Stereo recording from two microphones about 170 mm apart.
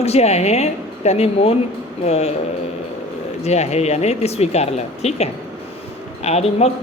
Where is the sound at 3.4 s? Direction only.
40° left (ahead or behind).